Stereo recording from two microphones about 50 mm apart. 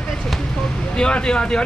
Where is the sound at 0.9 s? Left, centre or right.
Centre.